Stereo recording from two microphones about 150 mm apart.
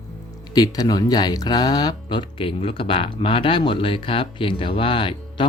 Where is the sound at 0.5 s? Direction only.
25° left (ahead or behind).